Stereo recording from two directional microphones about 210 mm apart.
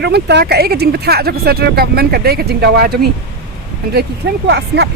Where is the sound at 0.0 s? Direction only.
55° right (ahead or behind).